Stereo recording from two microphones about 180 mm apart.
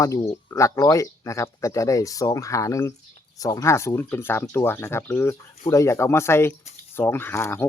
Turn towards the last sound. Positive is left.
turn(degrees=15)  # may be behind; listen again after turning